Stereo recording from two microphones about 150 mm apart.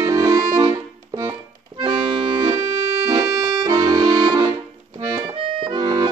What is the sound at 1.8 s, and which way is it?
Accordion, 35° right (ahead or behind).